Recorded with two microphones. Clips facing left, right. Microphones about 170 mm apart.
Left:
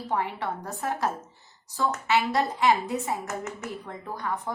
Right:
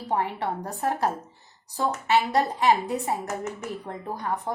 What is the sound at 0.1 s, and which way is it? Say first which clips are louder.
A woman's voice: right 3 dB; 35° right (ahead or behind).